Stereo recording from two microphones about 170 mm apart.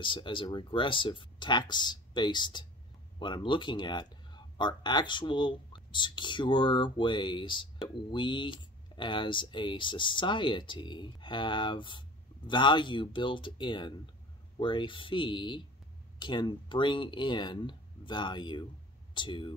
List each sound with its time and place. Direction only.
0.0 s speech: 30° left (ahead or behind)